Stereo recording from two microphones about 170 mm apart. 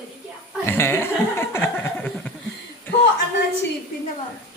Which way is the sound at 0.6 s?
15° left (ahead or behind).